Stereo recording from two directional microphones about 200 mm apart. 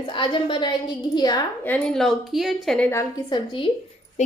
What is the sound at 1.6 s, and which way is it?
A woman's voice, 5° left (ahead or behind).